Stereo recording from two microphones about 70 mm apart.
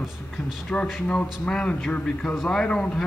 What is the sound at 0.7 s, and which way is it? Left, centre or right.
A man's voice, centre.